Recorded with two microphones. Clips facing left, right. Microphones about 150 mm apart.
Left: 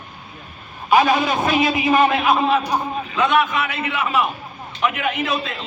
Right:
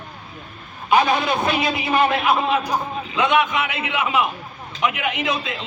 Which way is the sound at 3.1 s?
20° right (ahead or behind).